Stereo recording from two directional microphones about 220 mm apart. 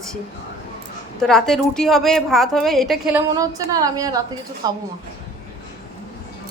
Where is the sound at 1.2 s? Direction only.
Centre (ahead or behind).